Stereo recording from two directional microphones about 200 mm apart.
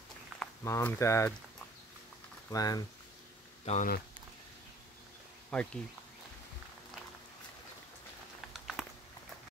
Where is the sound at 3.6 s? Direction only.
40° left (ahead or behind).